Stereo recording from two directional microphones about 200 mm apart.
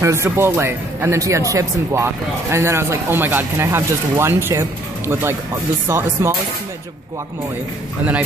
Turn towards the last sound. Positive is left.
turn(degrees=-10)  # may be behind; listen again after turning